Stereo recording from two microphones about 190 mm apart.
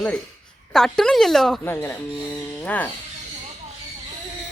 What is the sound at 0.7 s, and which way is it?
Speech, 5° left (ahead or behind).